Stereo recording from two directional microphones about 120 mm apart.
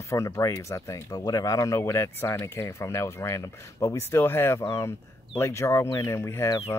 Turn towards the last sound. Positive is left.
turn(degrees=20)  # may be behind; listen again after turning